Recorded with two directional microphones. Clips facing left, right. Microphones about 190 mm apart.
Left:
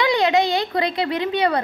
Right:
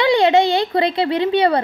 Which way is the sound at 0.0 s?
30° right (ahead or behind).